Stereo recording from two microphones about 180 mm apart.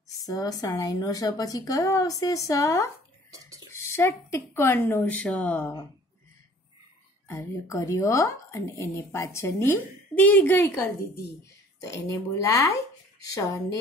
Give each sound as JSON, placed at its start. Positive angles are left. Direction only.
{"t": 0.3, "sound": "speech", "side_deg": 20}
{"t": 3.3, "sound": "a sound", "side_deg": -20}
{"t": 3.7, "sound": "speech", "side_deg": 15}
{"t": 7.2, "sound": "speech", "side_deg": 15}
{"t": 12.1, "sound": "speech", "side_deg": 20}